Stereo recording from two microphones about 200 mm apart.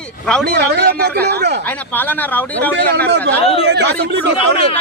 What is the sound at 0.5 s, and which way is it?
Speech, 50° right (ahead or behind).